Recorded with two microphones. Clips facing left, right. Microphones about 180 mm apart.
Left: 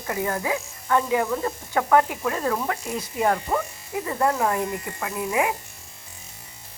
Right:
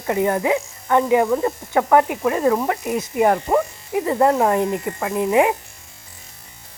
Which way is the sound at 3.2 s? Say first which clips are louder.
Right 5 dB; 30° right (ahead or behind).